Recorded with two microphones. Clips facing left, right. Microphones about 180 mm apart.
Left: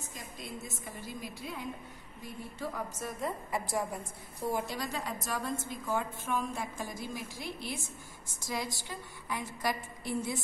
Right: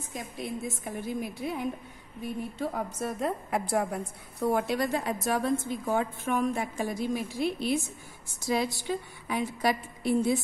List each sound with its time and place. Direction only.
0.4 s a woman's voice: 65° right (ahead or behind)
8.8 s a woman's voice: 70° right (ahead or behind)